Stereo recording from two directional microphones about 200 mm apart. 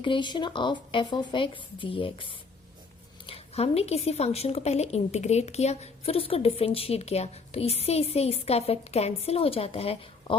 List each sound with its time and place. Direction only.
0.0 s speech: 25° left (ahead or behind)